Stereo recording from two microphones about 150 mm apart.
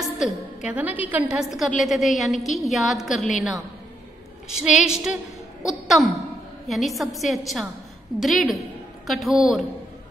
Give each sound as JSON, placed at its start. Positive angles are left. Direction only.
{"t": 0.7, "sound": "a woman's voice", "side_deg": -10}
{"t": 4.5, "sound": "a woman's voice", "side_deg": -5}